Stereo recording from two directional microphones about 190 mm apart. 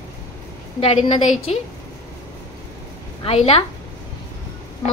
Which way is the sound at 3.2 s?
30° left (ahead or behind).